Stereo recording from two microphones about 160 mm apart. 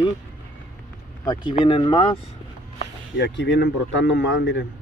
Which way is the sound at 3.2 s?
90° left.